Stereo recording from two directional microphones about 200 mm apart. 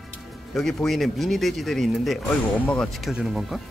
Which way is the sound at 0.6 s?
Centre (ahead or behind).